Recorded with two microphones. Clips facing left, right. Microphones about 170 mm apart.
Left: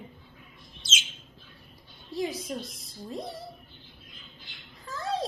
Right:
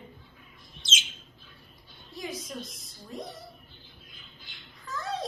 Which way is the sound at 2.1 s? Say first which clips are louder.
Left 6 dB; 30° left (ahead or behind).